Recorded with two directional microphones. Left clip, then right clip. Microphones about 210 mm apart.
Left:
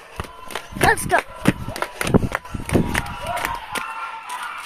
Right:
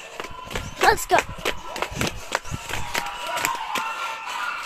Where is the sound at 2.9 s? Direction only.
20° left (ahead or behind).